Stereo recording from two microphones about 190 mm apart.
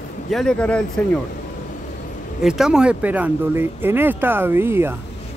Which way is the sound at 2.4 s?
Centre (ahead or behind).